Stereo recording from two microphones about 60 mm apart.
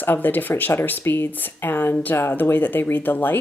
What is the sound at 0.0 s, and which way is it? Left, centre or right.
A woman's voice, left.